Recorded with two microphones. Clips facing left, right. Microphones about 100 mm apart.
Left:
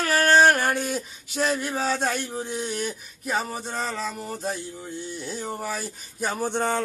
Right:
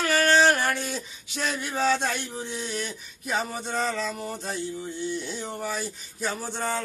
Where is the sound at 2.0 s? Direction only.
45° left (ahead or behind).